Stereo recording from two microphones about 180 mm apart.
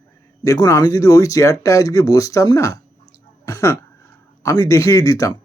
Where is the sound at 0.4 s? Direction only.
20° left (ahead or behind).